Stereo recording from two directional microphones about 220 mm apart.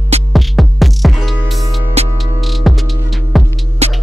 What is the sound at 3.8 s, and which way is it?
Music, 30° right (ahead or behind).